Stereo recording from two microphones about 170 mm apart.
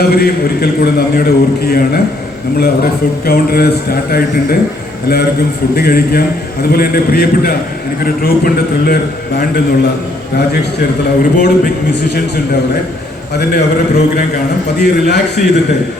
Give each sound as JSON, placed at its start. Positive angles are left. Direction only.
{"t": 0.0, "sound": "a man's voice", "side_deg": 65}
{"t": 11.2, "sound": "a man's voice", "side_deg": 65}
{"t": 13.3, "sound": "a man's voice", "side_deg": 75}